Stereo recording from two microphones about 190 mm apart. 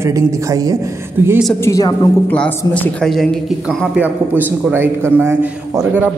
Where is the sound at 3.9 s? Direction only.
10° right (ahead or behind).